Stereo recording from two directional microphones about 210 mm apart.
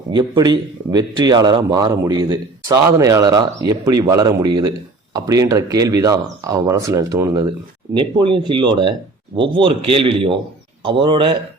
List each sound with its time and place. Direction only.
0.1 s a man's voice: 20° right (ahead or behind)